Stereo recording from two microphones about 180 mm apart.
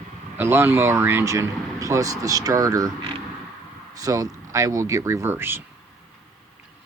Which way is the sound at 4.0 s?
20° right (ahead or behind).